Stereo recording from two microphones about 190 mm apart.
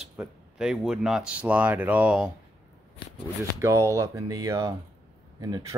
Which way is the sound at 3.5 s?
15° right (ahead or behind).